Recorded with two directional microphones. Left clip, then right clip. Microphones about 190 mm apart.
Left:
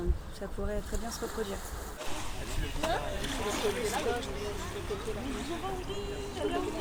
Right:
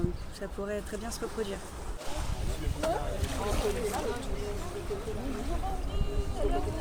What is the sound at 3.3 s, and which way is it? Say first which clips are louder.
Speech: even; 55° right (ahead or behind).